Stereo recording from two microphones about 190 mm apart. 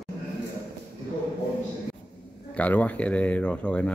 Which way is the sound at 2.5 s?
10° left (ahead or behind).